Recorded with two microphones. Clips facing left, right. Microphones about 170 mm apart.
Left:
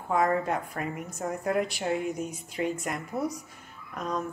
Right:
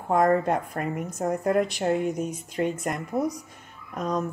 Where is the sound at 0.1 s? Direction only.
45° right (ahead or behind).